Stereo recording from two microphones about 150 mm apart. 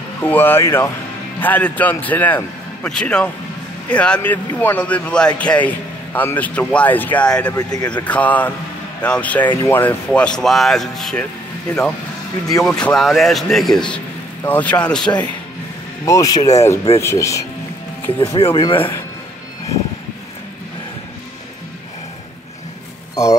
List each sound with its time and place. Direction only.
0.2 s speech: 15° left (ahead or behind)
7.5 s speech: 25° left (ahead or behind)
8.0 s speech: 10° left (ahead or behind)
12.6 s a man's voice: 5° left (ahead or behind)
16.1 s speech: 25° left (ahead or behind)
18.2 s speech: 40° left (ahead or behind)